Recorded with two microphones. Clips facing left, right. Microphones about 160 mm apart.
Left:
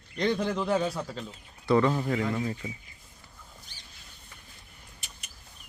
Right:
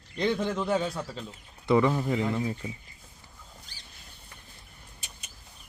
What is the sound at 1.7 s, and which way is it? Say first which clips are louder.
Speech: even; 15° right (ahead or behind).